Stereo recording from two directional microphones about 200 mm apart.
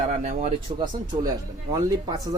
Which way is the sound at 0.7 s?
20° right (ahead or behind).